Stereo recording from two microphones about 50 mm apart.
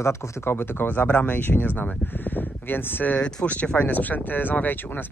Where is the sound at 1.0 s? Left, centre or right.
Left.